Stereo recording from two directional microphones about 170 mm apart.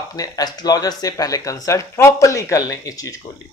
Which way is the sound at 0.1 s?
20° left (ahead or behind).